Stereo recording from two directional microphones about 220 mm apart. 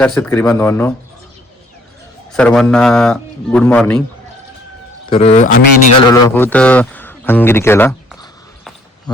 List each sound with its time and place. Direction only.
0.0 s a man's voice: 5° left (ahead or behind)
2.3 s a man's voice: centre (ahead or behind)
5.0 s speech: 25° left (ahead or behind)
6.1 s a man's voice: 15° left (ahead or behind)
9.1 s a sound: 20° left (ahead or behind)